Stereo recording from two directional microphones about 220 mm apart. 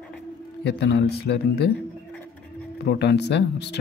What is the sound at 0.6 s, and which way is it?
Speech, 50° left (ahead or behind).